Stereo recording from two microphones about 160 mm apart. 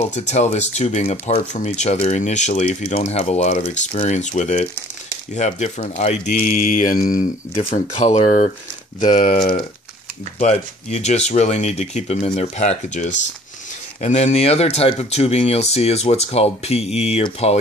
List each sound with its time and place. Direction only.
0.3 s speech: 45° left (ahead or behind)
6.3 s speech: 60° left (ahead or behind)
7.7 s speech: 45° left (ahead or behind)